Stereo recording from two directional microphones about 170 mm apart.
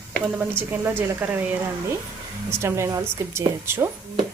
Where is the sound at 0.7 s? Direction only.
15° right (ahead or behind).